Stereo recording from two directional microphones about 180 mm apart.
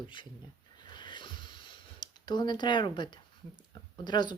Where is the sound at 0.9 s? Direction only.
25° left (ahead or behind).